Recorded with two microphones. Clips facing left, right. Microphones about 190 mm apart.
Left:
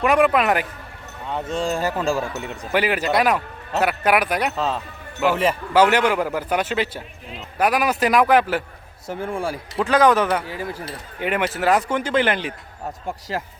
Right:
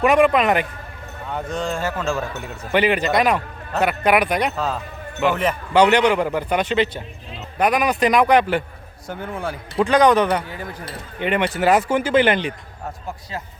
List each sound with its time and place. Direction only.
0.0 s a man's voice: centre (ahead or behind)
1.7 s a man's voice: 15° left (ahead or behind)
10.4 s speech: 30° left (ahead or behind)
11.2 s a man's voice: 5° left (ahead or behind)
13.3 s speech: 70° left (ahead or behind)